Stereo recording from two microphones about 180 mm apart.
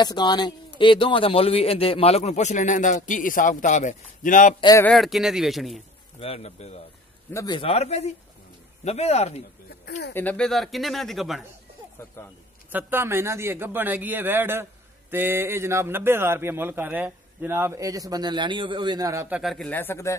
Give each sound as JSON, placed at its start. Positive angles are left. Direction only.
{"t": 0.0, "sound": "a man's voice", "side_deg": 25}
{"t": 4.6, "sound": "speech", "side_deg": 20}
{"t": 4.8, "sound": "speech", "side_deg": 0}
{"t": 6.1, "sound": "a man's voice", "side_deg": 35}
{"t": 7.3, "sound": "a man's voice", "side_deg": 25}
{"t": 10.1, "sound": "speech", "side_deg": 5}
{"t": 12.7, "sound": "a man's voice", "side_deg": -10}
{"t": 19.3, "sound": "speech", "side_deg": 0}